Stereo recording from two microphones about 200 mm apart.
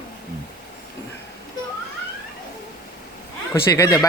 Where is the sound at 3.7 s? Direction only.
15° left (ahead or behind).